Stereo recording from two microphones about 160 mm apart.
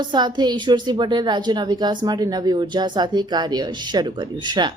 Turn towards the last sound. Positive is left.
turn(degrees=-30)  # may be behind; listen again after turning